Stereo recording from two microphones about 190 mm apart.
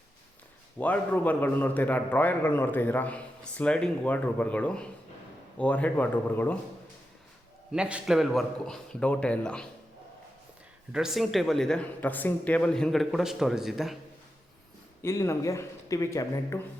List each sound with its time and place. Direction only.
0.8 s a man's voice: 10° left (ahead or behind)
7.7 s speech: 5° right (ahead or behind)
10.9 s speech: centre (ahead or behind)
15.0 s a man's voice: 15° left (ahead or behind)